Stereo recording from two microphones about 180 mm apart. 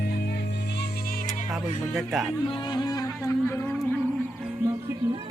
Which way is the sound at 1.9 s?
Centre (ahead or behind).